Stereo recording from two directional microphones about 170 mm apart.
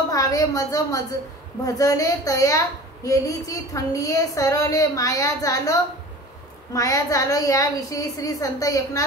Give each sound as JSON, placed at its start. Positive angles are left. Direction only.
{"t": 0.1, "sound": "a woman's voice", "side_deg": 20}